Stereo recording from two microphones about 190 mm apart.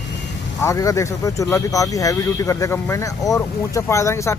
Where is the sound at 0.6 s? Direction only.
15° left (ahead or behind).